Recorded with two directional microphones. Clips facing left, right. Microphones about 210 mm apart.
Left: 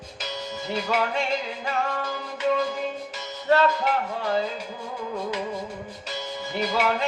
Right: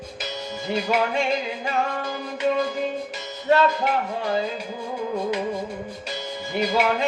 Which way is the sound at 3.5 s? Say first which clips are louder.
Right 1 dB; 20° right (ahead or behind).